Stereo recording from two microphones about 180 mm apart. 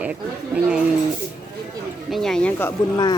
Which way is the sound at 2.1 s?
Centre (ahead or behind).